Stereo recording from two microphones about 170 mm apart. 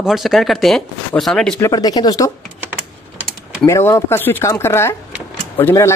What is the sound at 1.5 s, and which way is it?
Speech, 20° left (ahead or behind).